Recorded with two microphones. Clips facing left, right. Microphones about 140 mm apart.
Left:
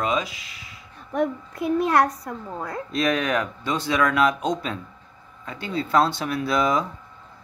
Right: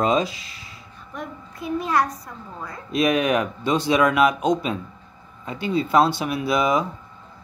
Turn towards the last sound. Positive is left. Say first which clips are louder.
# right 1 dB
turn(degrees=-10)  # may be behind; listen again after turning